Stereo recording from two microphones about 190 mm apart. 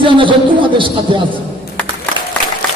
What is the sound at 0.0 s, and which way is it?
Speech, 25° right (ahead or behind).